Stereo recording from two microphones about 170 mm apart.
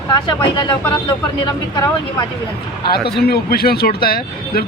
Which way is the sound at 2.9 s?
70° left (ahead or behind).